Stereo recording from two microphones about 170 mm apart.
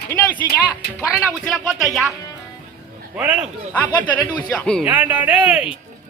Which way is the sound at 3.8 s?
10° left (ahead or behind).